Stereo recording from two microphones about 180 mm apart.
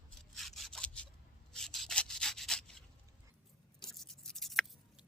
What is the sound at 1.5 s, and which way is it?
Rub, 5° left (ahead or behind).